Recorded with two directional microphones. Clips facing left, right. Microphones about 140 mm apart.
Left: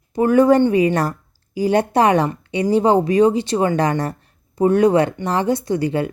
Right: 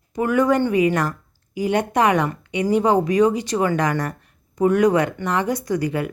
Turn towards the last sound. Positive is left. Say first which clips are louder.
# left 3 dB
turn(degrees=30)  # may be behind; listen again after turning